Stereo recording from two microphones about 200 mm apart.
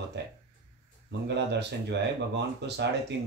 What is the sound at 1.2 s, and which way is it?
Speech, 60° right (ahead or behind).